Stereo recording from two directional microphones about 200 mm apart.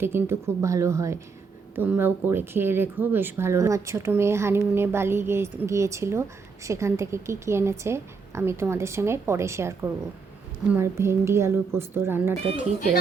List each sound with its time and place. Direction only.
0.0 s speech: 10° right (ahead or behind)